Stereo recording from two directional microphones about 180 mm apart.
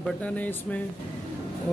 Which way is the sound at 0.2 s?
10° left (ahead or behind).